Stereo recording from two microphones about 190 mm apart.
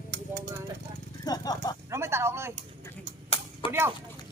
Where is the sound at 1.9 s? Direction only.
15° right (ahead or behind).